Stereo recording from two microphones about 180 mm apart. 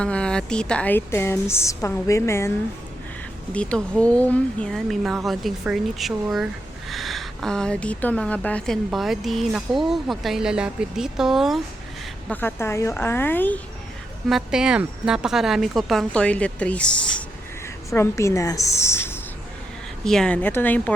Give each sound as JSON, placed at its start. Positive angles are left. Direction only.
{"t": 0.0, "sound": "a woman's voice", "side_deg": 5}
{"t": 3.5, "sound": "speech", "side_deg": 5}
{"t": 12.3, "sound": "a woman's voice", "side_deg": 10}
{"t": 14.3, "sound": "a woman's voice", "side_deg": 0}